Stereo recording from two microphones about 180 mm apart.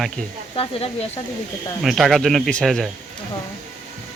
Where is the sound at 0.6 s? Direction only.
30° left (ahead or behind).